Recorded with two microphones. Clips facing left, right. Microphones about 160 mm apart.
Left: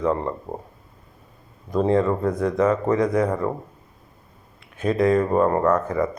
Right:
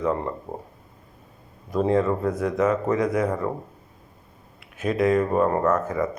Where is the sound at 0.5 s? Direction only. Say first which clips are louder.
Left 2 dB; 10° left (ahead or behind).